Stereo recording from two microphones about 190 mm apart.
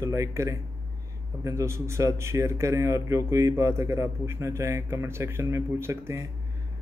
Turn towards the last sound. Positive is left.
turn(degrees=-15)  # may be behind; listen again after turning